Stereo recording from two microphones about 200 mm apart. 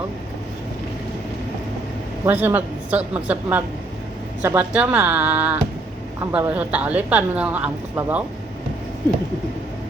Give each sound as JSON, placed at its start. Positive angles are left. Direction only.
{"t": 2.2, "sound": "a woman's voice", "side_deg": -10}